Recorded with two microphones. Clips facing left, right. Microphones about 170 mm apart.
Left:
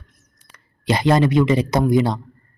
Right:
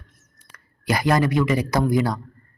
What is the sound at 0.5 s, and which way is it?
A man's voice, 25° left (ahead or behind).